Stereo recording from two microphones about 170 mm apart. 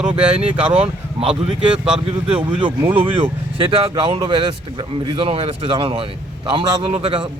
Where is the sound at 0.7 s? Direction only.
35° right (ahead or behind).